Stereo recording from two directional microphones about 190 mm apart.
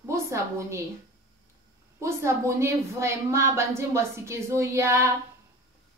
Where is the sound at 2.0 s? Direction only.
15° right (ahead or behind).